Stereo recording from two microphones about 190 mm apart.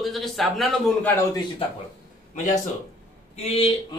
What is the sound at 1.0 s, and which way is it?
Speech, 15° left (ahead or behind).